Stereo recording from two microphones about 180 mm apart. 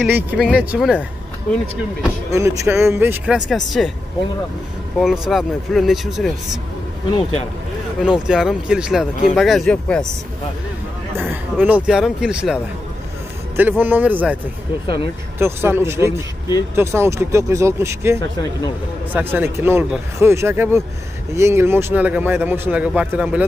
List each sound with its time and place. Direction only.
0.1 s speech: 5° right (ahead or behind)
2.3 s speech: 15° right (ahead or behind); by 3.9 s centre (ahead or behind)
4.9 s speech: 5° right (ahead or behind)
8.0 s speech: 5° right (ahead or behind)
11.1 s speech: 10° right (ahead or behind)